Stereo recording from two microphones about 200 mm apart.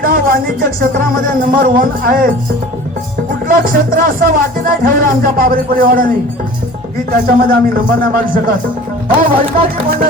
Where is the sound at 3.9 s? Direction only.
45° right (ahead or behind).